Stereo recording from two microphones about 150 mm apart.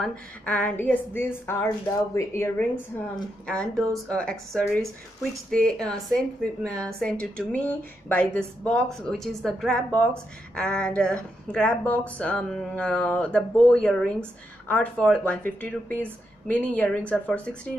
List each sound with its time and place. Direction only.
0.0 s a woman's voice: 10° left (ahead or behind)
3.4 s a woman's voice: 5° left (ahead or behind)